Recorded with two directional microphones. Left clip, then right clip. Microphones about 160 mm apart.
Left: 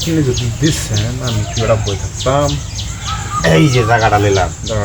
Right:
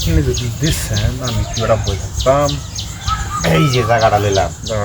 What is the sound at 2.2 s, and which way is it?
Speech, 15° left (ahead or behind).